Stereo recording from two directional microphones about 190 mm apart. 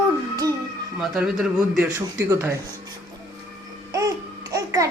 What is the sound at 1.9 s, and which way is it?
Speech, 15° right (ahead or behind).